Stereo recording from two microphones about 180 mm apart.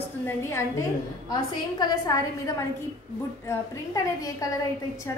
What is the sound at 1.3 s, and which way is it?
Speech, 25° left (ahead or behind).